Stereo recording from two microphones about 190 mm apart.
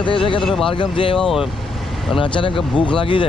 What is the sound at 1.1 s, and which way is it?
Speech, centre (ahead or behind).